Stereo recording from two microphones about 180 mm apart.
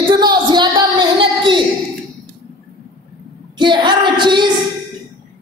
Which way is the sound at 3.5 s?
25° right (ahead or behind).